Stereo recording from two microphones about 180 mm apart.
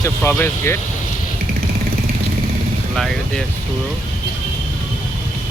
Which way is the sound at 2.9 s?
Centre (ahead or behind).